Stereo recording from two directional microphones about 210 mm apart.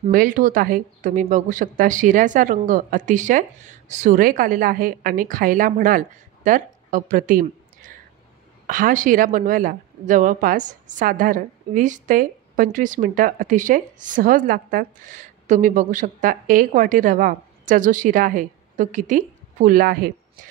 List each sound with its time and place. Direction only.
0.0 s speech: 40° right (ahead or behind)